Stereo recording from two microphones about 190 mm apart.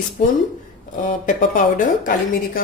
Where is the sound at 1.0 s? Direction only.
40° left (ahead or behind).